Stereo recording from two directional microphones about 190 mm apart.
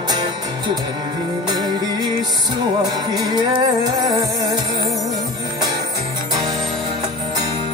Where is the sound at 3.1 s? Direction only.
20° right (ahead or behind).